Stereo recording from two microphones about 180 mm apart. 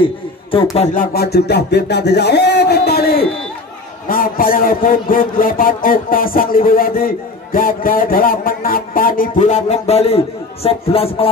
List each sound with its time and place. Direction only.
1.1 s a sound: 60° left (ahead or behind)
4.1 s speech: 50° left (ahead or behind)
9.4 s a man's voice: 40° left (ahead or behind)